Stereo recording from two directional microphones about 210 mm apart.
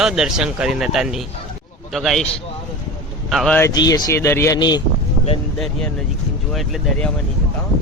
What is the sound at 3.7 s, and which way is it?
Speech, 20° left (ahead or behind).